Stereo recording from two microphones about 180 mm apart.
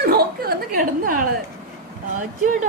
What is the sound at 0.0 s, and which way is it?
Chuckle, 60° right (ahead or behind).